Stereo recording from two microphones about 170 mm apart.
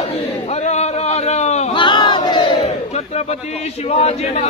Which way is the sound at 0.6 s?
40° left (ahead or behind).